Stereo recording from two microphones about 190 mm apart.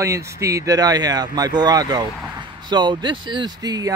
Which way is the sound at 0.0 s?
15° right (ahead or behind).